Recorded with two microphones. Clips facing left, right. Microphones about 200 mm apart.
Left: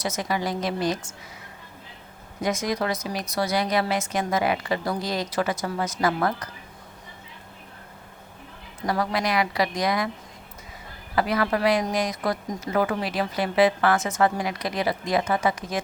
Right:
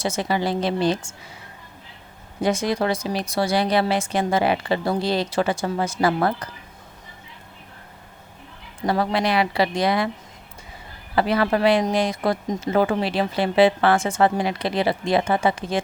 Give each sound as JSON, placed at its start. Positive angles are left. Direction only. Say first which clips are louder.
{"t": 0.0, "sound": "speech", "louder": "right 4 dB", "side_deg": -30}
{"t": 2.4, "sound": "speech", "louder": "right 4 dB", "side_deg": -30}
{"t": 8.9, "sound": "speech", "louder": "right 4 dB", "side_deg": -30}
{"t": 11.1, "sound": "speech", "louder": "right 3 dB", "side_deg": -30}